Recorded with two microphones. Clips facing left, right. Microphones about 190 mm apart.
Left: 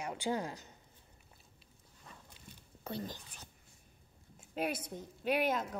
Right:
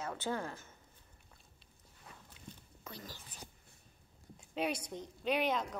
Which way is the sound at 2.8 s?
25° left (ahead or behind).